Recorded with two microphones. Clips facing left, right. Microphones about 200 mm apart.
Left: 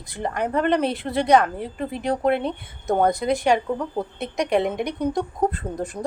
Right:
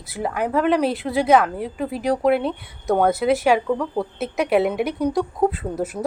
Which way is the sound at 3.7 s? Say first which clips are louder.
Right 3 dB; 20° left (ahead or behind).